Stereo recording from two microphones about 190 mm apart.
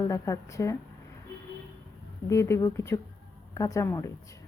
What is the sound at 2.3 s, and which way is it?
A woman's voice, 15° left (ahead or behind).